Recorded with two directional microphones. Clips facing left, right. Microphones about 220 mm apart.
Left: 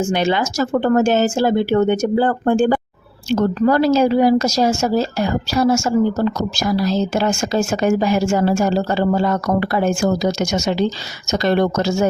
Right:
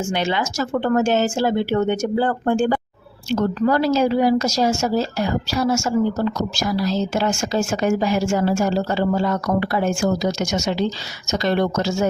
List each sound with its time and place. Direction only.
0.1 s a woman's voice: 40° left (ahead or behind)
7.1 s a woman's voice: 45° left (ahead or behind)